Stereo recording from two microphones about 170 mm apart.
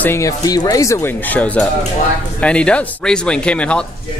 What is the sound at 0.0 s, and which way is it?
A man's voice, 15° left (ahead or behind).